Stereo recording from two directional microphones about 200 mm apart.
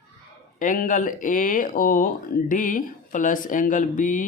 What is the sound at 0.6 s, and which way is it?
A man's voice, 40° left (ahead or behind).